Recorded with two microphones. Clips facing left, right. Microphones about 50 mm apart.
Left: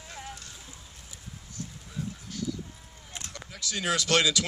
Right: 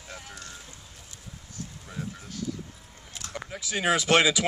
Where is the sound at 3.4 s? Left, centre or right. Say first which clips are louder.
Right 5 dB; right.